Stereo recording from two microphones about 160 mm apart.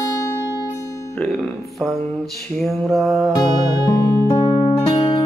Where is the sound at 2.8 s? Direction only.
Centre (ahead or behind).